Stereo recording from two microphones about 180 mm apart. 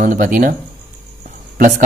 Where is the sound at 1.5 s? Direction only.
45° right (ahead or behind).